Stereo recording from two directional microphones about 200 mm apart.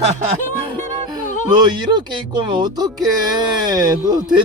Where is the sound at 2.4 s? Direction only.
20° right (ahead or behind).